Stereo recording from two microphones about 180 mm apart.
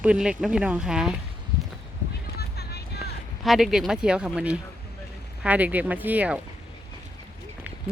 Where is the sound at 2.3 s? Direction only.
65° left (ahead or behind).